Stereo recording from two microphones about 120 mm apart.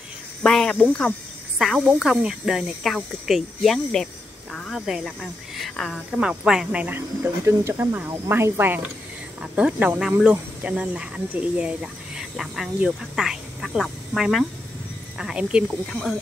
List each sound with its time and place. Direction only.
0.4 s speech: 5° left (ahead or behind)
1.9 s speech: 5° right (ahead or behind)
7.4 s speech: 20° right (ahead or behind)
15.9 s speech: 5° left (ahead or behind)